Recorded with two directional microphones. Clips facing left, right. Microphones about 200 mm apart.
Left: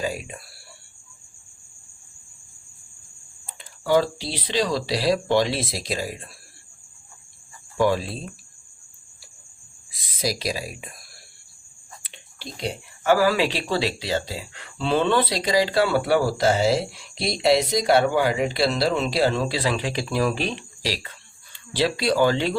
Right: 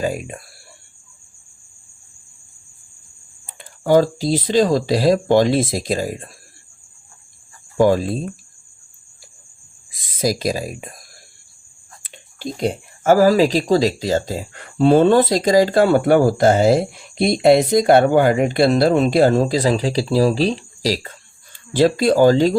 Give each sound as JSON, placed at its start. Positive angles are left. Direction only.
{"t": 0.0, "sound": "speech", "side_deg": -50}
{"t": 3.6, "sound": "speech", "side_deg": -50}
{"t": 7.8, "sound": "speech", "side_deg": -45}
{"t": 10.1, "sound": "speech", "side_deg": -45}
{"t": 12.0, "sound": "speech", "side_deg": -45}